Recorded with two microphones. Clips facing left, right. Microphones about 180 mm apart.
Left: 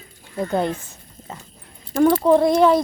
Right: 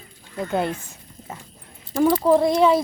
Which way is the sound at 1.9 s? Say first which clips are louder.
Left 2 dB; centre (ahead or behind).